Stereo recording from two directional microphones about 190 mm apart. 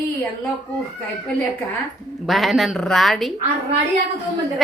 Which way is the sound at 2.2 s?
Centre (ahead or behind).